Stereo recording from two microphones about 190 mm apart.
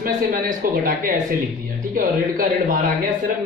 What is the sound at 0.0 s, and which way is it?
A man's voice, 45° right (ahead or behind).